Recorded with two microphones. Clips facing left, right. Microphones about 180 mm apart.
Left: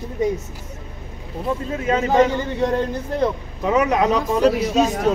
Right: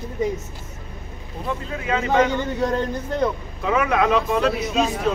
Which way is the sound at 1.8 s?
40° left (ahead or behind).